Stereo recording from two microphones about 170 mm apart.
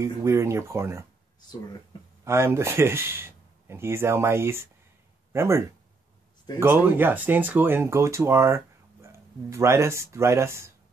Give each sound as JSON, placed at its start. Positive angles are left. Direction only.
{"t": 0.0, "sound": "speech", "side_deg": -15}
{"t": 2.2, "sound": "speech", "side_deg": -15}
{"t": 6.6, "sound": "speech", "side_deg": -15}